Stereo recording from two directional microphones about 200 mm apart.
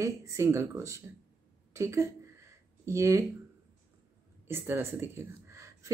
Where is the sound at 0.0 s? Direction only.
15° right (ahead or behind).